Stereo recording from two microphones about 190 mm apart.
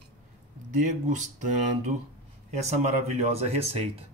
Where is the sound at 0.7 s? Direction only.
40° right (ahead or behind).